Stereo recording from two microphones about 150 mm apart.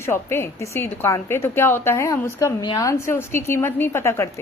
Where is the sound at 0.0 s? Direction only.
15° left (ahead or behind).